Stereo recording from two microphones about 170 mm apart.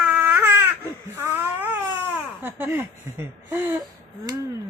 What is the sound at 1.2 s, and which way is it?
Baby cry, 15° right (ahead or behind).